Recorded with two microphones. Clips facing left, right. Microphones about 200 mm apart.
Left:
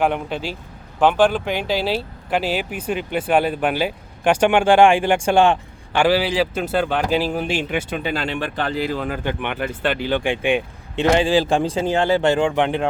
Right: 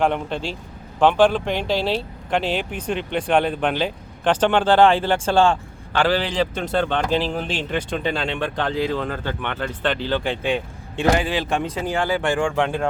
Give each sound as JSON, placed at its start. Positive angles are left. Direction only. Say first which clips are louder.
{"t": 0.0, "sound": "speech", "louder": "even", "side_deg": 5}
{"t": 11.1, "sound": "speech", "louder": "left 5 dB", "side_deg": 30}